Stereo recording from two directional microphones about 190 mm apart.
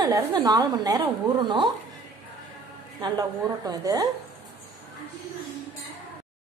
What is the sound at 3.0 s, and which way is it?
A woman's voice, 15° right (ahead or behind).